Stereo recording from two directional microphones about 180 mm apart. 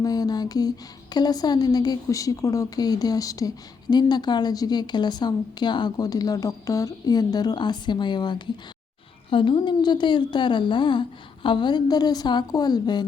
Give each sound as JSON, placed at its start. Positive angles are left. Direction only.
{"t": 0.0, "sound": "a woman's voice", "side_deg": 20}